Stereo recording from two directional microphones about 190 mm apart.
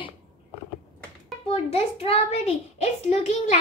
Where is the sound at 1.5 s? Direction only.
30° left (ahead or behind).